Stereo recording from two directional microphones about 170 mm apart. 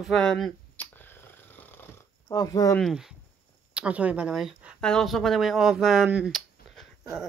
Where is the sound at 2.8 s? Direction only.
Centre (ahead or behind).